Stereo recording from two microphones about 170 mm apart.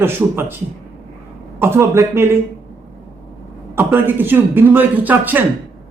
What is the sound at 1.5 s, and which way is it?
Speech, 15° right (ahead or behind).